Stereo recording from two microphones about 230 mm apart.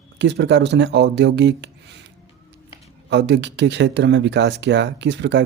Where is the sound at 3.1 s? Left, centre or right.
Right.